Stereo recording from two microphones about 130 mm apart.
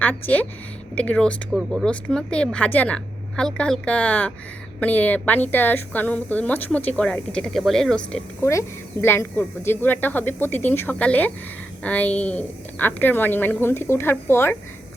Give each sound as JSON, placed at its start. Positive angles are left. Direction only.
{"t": 0.0, "sound": "a woman's voice", "side_deg": 10}
{"t": 1.5, "sound": "speech", "side_deg": -5}
{"t": 2.1, "sound": "a woman's voice", "side_deg": 10}
{"t": 8.4, "sound": "a woman's voice", "side_deg": 20}